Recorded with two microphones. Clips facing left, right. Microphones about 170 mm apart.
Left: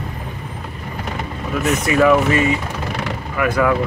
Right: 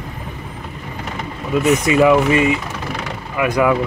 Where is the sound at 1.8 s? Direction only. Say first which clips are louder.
Left 1 dB; 15° right (ahead or behind).